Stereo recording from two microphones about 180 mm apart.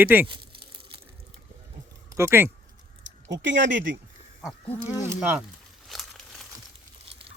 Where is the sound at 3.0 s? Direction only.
90° right.